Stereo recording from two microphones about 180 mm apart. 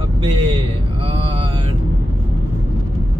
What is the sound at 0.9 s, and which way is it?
Mantra, 30° right (ahead or behind).